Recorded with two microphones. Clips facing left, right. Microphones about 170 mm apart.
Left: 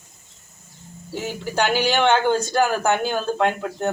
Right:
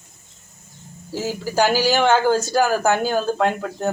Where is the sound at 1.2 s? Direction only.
5° right (ahead or behind).